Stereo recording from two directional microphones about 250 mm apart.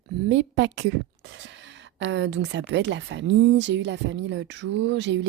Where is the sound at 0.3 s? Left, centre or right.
Right.